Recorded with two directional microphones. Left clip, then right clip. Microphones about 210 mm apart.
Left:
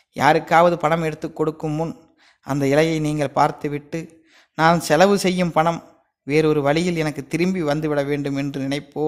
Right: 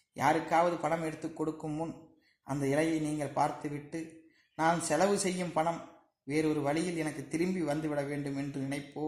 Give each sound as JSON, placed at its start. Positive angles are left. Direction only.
{"t": 0.1, "sound": "a man's voice", "side_deg": 35}